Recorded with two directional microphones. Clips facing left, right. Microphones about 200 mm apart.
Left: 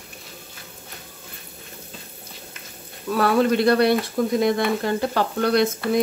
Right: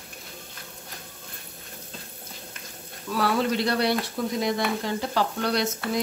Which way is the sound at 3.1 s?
55° left (ahead or behind).